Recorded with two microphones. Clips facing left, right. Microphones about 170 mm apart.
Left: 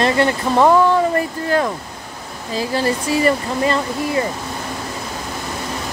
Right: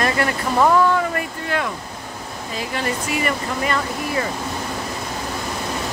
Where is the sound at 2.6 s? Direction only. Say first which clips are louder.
Left 6 dB; 35° left (ahead or behind).